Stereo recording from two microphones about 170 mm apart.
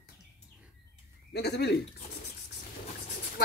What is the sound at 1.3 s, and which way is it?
Speech, 75° left (ahead or behind).